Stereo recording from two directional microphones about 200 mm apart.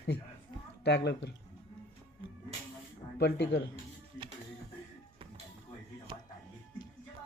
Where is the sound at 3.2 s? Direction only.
55° left (ahead or behind).